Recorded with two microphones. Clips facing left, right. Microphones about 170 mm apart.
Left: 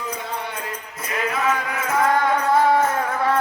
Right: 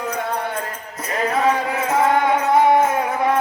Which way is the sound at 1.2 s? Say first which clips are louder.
Right 4 dB; 35° right (ahead or behind).